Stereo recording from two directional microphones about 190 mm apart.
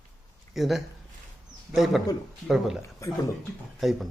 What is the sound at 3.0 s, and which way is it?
Speech, 15° left (ahead or behind).